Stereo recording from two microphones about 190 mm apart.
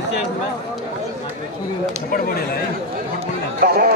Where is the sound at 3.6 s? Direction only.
50° right (ahead or behind).